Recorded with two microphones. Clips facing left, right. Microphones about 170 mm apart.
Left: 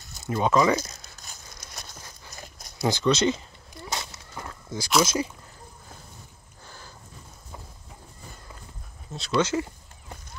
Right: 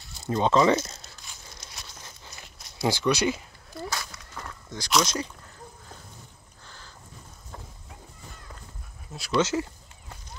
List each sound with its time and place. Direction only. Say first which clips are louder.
0.3 s speech: right 1 dB; 25° right (ahead or behind)
1.1 s a sound: left 1 dB; 45° left (ahead or behind)
2.3 s dog: left 4 dB; 40° left (ahead or behind)
2.8 s speech: left 2 dB; 20° left (ahead or behind)
3.9 s horse: left 1 dB; 25° left (ahead or behind)
4.6 s speech: left 2 dB; 5° left (ahead or behind)
6.6 s a sound: left 3 dB; 10° left (ahead or behind)
9.3 s speech: even; 20° left (ahead or behind)